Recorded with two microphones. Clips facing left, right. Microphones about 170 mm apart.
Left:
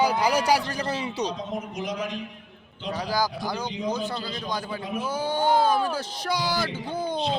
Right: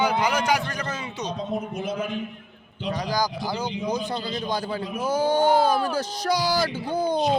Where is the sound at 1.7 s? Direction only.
85° left.